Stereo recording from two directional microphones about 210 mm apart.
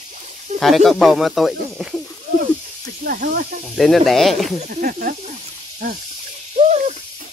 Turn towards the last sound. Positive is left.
turn(degrees=-30)  # may be behind; listen again after turning